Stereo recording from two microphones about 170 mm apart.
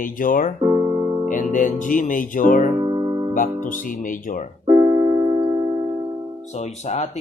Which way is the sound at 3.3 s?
50° left (ahead or behind).